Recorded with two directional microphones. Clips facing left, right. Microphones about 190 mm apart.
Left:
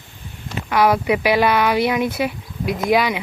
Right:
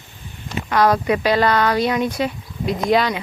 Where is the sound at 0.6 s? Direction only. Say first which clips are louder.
Even; 10° left (ahead or behind).